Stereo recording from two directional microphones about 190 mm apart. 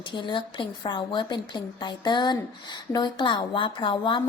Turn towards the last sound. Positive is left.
turn(degrees=25)  # may be behind; listen again after turning